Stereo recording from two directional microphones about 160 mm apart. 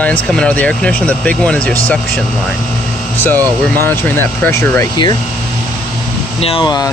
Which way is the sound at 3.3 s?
10° left (ahead or behind).